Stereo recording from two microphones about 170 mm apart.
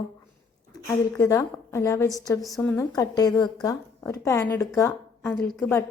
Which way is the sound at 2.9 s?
20° left (ahead or behind).